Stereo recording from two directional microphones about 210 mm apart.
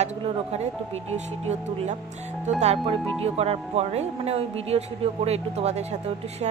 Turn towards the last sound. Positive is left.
turn(degrees=-30)  # may be behind; listen again after turning